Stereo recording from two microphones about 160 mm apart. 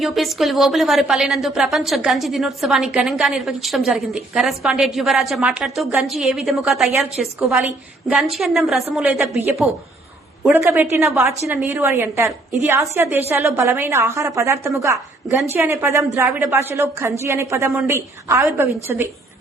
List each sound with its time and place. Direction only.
0.0 s a woman's voice: centre (ahead or behind)
10.4 s a woman's voice: 15° right (ahead or behind)